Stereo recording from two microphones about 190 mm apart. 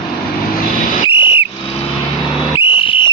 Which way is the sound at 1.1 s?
25° left (ahead or behind).